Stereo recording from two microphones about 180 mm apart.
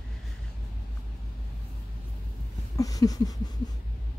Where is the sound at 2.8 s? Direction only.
20° left (ahead or behind).